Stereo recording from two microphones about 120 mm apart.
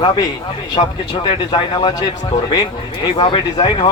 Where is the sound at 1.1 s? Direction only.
40° left (ahead or behind).